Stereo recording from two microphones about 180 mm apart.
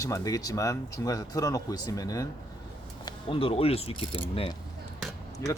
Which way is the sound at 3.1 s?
30° left (ahead or behind).